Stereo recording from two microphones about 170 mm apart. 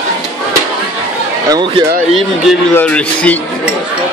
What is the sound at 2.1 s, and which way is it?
A man's voice, centre (ahead or behind).